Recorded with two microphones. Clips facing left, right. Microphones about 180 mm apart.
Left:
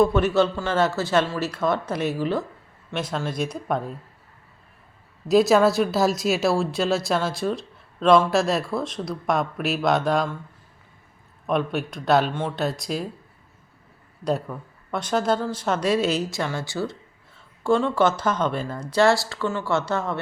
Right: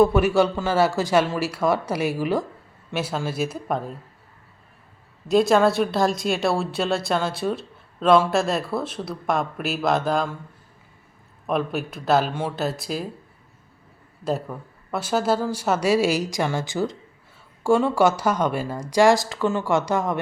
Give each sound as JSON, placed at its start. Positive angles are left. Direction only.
{"t": 0.0, "sound": "speech", "side_deg": -10}
{"t": 5.3, "sound": "speech", "side_deg": 0}
{"t": 11.4, "sound": "speech", "side_deg": 0}
{"t": 14.3, "sound": "speech", "side_deg": -5}